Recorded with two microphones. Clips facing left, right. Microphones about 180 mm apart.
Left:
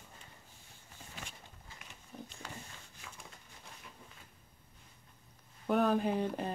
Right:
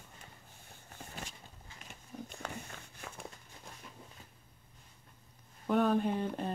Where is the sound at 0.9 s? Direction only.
55° right (ahead or behind).